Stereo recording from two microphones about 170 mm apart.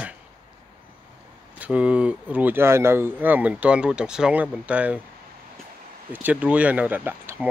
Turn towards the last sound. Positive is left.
turn(degrees=-10)  # may be behind; listen again after turning